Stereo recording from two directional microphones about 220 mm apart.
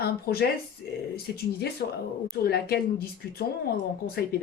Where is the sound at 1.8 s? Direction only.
45° left (ahead or behind).